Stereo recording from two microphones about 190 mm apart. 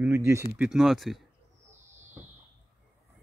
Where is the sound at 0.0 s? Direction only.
15° right (ahead or behind).